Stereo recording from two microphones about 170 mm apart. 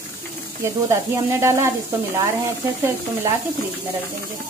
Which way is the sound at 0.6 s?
15° right (ahead or behind).